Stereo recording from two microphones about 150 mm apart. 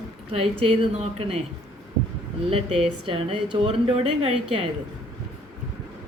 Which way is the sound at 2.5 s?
35° right (ahead or behind).